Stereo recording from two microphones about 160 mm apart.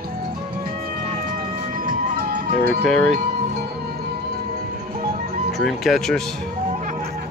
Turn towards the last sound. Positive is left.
turn(degrees=0)  # may be behind; listen again after turning